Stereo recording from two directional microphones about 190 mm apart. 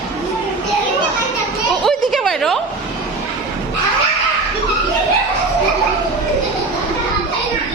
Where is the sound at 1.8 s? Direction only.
Centre (ahead or behind).